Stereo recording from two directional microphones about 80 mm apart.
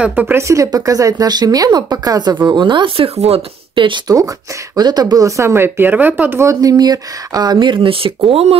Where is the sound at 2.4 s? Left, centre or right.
Right.